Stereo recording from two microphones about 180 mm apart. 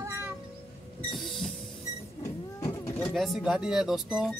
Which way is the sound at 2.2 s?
15° left (ahead or behind).